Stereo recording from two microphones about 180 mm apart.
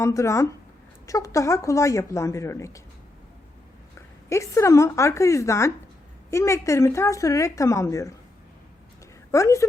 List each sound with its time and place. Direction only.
0.0 s speech: 15° left (ahead or behind)
4.3 s speech: 15° left (ahead or behind)
9.3 s speech: 15° left (ahead or behind)